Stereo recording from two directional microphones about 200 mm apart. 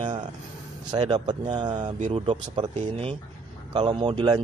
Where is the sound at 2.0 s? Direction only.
35° right (ahead or behind).